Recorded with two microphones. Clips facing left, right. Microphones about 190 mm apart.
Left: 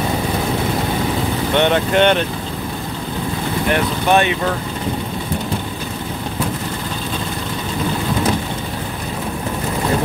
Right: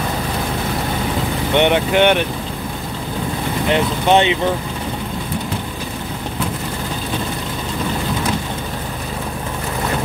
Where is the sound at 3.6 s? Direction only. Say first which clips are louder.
Right 1 dB; 20° right (ahead or behind).